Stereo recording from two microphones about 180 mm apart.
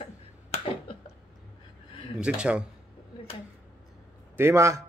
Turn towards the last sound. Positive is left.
turn(degrees=-15)  # may be behind; listen again after turning